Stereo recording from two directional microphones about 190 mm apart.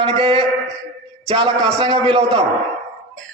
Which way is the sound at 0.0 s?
25° right (ahead or behind).